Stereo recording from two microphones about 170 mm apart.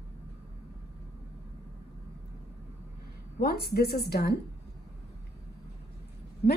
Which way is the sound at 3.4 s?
70° left (ahead or behind).